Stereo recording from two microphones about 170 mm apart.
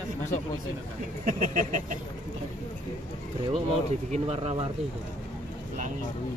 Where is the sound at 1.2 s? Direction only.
50° right (ahead or behind).